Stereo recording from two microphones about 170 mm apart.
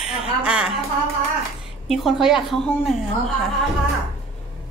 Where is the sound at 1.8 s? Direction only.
Centre (ahead or behind).